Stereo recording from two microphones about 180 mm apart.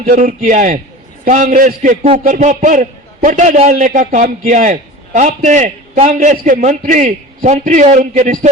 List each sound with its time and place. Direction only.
0.0 s a man's voice: 50° right (ahead or behind)